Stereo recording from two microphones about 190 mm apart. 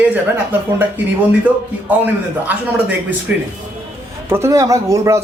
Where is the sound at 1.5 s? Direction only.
5° right (ahead or behind).